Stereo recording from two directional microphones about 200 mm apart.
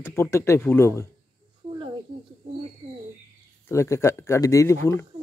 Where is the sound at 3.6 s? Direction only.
15° left (ahead or behind).